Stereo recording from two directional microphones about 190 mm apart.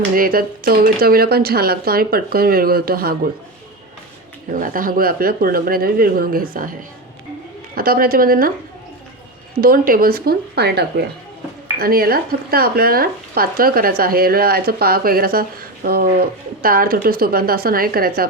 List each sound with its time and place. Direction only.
0.2 s speech: 50° right (ahead or behind)
4.5 s speech: 45° right (ahead or behind)
7.8 s speech: 50° right (ahead or behind)
9.6 s speech: 50° right (ahead or behind)